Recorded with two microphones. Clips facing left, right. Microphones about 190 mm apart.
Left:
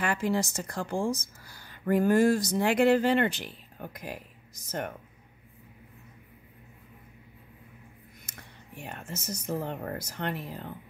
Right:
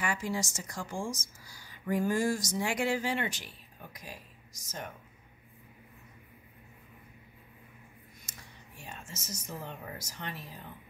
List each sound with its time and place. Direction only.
0.0 s speech: 60° left (ahead or behind)
8.3 s speech: 60° left (ahead or behind)